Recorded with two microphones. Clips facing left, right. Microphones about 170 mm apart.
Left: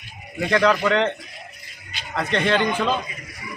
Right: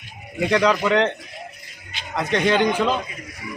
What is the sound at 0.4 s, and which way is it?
A man's voice, 10° right (ahead or behind).